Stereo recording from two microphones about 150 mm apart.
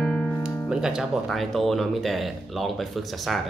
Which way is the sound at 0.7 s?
5° right (ahead or behind).